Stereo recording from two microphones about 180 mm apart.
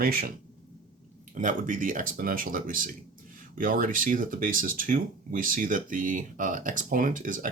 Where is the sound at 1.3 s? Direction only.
45° right (ahead or behind).